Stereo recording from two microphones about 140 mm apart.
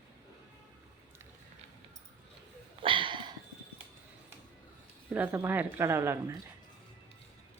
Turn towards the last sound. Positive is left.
turn(degrees=-20)  # may be behind; listen again after turning